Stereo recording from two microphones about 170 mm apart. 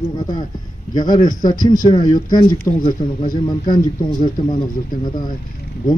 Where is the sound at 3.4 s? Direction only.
25° left (ahead or behind).